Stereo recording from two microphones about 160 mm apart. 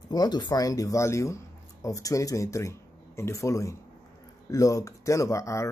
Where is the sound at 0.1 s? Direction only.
25° left (ahead or behind).